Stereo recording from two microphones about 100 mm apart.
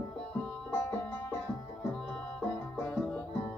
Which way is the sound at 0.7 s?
20° left (ahead or behind).